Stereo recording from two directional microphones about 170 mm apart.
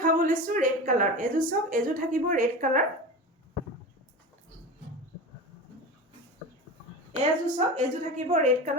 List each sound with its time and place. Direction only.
0.0 s a woman's voice: 50° right (ahead or behind)
7.2 s a woman's voice: 45° right (ahead or behind)